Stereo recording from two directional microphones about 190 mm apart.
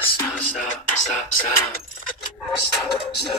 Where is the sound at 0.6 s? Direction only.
40° left (ahead or behind).